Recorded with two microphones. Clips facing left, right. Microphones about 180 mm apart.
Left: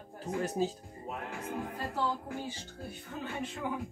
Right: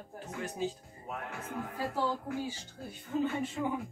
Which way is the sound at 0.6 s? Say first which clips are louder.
Left 2 dB; 40° left (ahead or behind).